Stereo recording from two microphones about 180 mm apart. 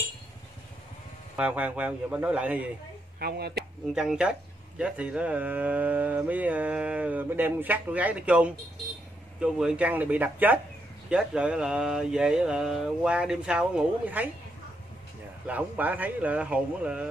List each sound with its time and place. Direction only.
1.3 s speech: 10° right (ahead or behind)
3.2 s speech: 60° right (ahead or behind)
3.5 s speech: 5° right (ahead or behind)
15.4 s speech: 10° right (ahead or behind)